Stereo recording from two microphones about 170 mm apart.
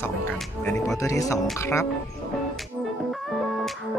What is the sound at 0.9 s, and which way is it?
Speech, 20° left (ahead or behind).